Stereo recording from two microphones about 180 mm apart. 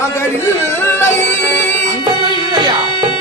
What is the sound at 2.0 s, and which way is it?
Music, 25° right (ahead or behind).